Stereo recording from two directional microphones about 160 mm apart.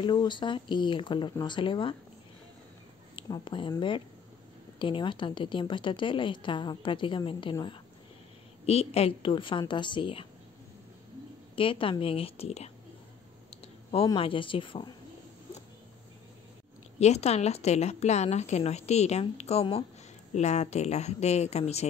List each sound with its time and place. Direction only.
0.0 s a woman's voice: 30° left (ahead or behind)
3.2 s speech: 30° left (ahead or behind)
4.7 s a woman's voice: 30° left (ahead or behind)
11.5 s a woman's voice: 35° left (ahead or behind)
14.0 s a woman's voice: 35° left (ahead or behind)
17.0 s a woman's voice: 45° left (ahead or behind)